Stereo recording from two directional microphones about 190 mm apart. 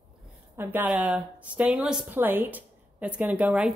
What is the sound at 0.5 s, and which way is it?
A woman's voice, 10° right (ahead or behind).